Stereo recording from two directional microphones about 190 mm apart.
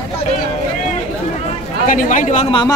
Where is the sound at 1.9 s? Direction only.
45° left (ahead or behind).